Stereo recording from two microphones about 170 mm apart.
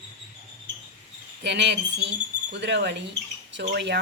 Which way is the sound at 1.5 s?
90° right.